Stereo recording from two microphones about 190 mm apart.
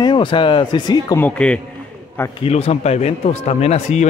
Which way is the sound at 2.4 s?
30° left (ahead or behind).